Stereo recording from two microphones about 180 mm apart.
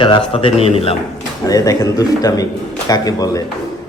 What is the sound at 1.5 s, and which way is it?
A man's voice, 20° left (ahead or behind).